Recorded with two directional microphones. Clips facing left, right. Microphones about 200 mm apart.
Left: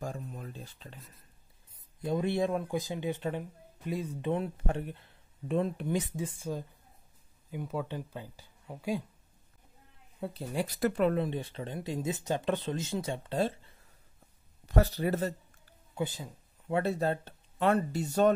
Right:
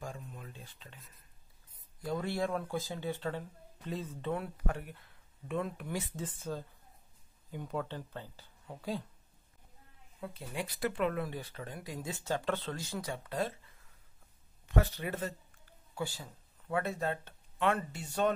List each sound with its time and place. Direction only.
0.0 s speech: 40° left (ahead or behind)
0.9 s speech: centre (ahead or behind)
2.0 s speech: 20° left (ahead or behind)
10.2 s speech: 35° left (ahead or behind)
11.1 s speech: 25° left (ahead or behind)
15.9 s a sound: 20° left (ahead or behind)
16.8 s speech: 35° left (ahead or behind)